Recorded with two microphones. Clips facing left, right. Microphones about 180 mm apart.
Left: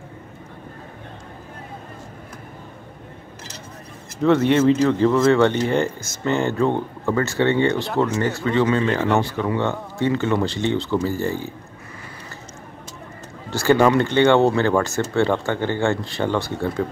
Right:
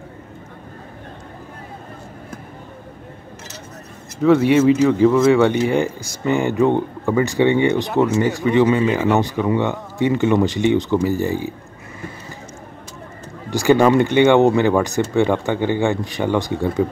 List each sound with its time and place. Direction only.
4.2 s speech: 10° right (ahead or behind)
9.2 s speech: 15° right (ahead or behind)
13.5 s speech: 15° right (ahead or behind)